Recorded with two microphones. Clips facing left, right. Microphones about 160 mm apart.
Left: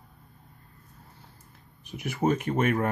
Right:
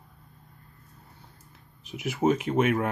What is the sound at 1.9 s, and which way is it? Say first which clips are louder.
Speech: right 2 dB; 5° right (ahead or behind).